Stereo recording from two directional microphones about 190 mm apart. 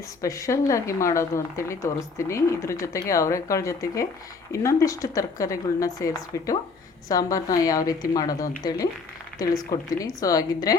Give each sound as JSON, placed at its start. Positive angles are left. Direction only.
{"t": 0.2, "sound": "a woman's voice", "side_deg": 15}
{"t": 10.0, "sound": "a woman's voice", "side_deg": 20}